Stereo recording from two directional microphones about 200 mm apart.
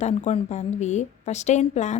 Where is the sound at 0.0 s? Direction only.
35° left (ahead or behind).